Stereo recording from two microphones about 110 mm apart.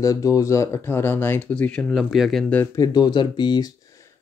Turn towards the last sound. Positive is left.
turn(degrees=45)  # may be behind; listen again after turning